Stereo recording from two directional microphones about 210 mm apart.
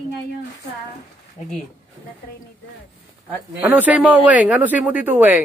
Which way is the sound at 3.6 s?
5° right (ahead or behind).